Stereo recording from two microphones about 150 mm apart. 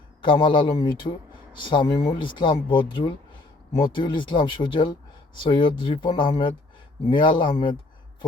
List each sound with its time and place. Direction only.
0.2 s speech: 30° left (ahead or behind)